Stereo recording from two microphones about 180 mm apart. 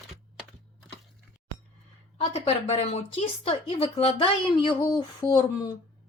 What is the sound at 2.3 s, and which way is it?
Speech, 35° left (ahead or behind).